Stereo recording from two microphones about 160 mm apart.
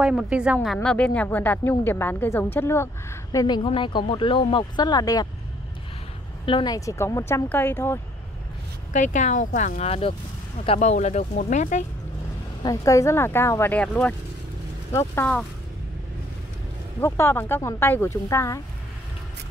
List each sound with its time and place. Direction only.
0.0 s a woman's voice: 5° right (ahead or behind)
0.8 s a woman's voice: 10° left (ahead or behind); by 5.3 s 25° left (ahead or behind)
6.4 s speech: 30° left (ahead or behind)
8.9 s speech: 50° left (ahead or behind)
12.6 s speech: 20° left (ahead or behind)
17.0 s speech: 15° left (ahead or behind)